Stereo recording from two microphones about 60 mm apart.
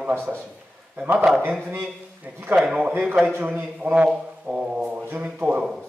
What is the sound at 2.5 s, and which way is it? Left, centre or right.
A man's voice, right.